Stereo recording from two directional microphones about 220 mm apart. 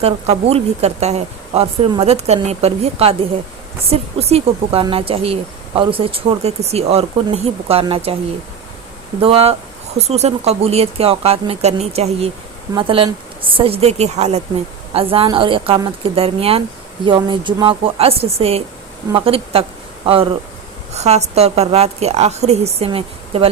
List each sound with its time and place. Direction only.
0.0 s speech: 30° right (ahead or behind)
9.2 s speech: 25° right (ahead or behind)
20.9 s speech: 30° right (ahead or behind)